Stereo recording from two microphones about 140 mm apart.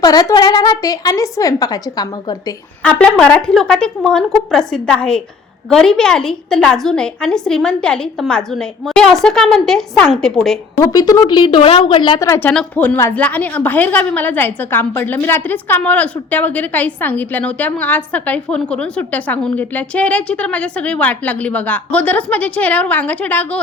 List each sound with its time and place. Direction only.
0.0 s a woman's voice: 25° left (ahead or behind)
2.8 s a woman's voice: 10° left (ahead or behind)
10.8 s a woman's voice: 25° left (ahead or behind)
12.3 s a woman's voice: 10° left (ahead or behind)